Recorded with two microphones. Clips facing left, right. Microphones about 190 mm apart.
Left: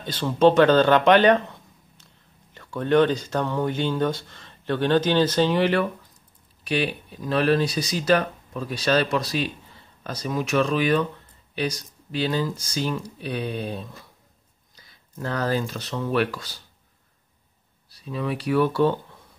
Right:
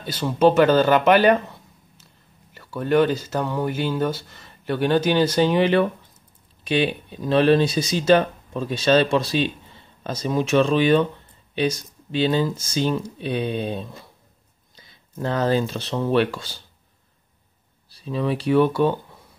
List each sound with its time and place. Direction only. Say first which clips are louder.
0.0 s speech: even; 10° right (ahead or behind); by 16.6 s 25° right (ahead or behind)
17.8 s speech: right 4 dB; 30° right (ahead or behind)